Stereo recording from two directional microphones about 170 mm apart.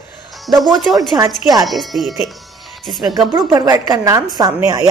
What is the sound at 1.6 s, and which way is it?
Speech, centre (ahead or behind).